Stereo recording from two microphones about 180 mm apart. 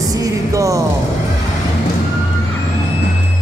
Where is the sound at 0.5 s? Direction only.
15° right (ahead or behind).